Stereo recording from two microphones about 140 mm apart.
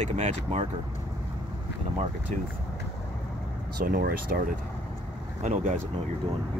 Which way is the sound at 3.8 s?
90° right.